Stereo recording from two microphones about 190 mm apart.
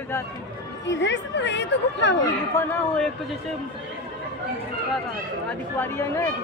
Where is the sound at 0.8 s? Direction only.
70° left (ahead or behind).